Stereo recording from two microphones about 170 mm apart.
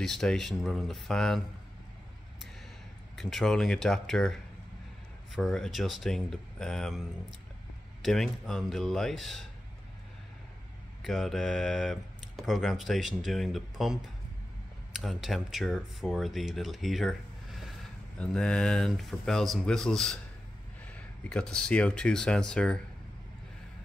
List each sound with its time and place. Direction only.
0.0 s speech: 5° left (ahead or behind)
3.2 s speech: centre (ahead or behind)
11.0 s speech: centre (ahead or behind)